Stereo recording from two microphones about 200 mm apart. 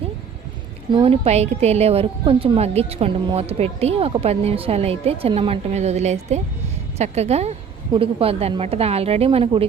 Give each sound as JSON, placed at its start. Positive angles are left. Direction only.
{"t": 0.9, "sound": "a woman's voice", "side_deg": -30}